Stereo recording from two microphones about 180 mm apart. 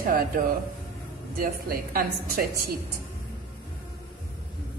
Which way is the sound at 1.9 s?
55° right (ahead or behind).